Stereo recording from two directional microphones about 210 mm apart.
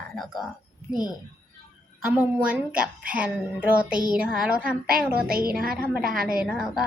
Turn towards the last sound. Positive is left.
turn(degrees=-5)  # may be behind; listen again after turning